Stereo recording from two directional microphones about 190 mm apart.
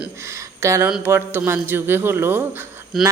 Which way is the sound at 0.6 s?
15° right (ahead or behind).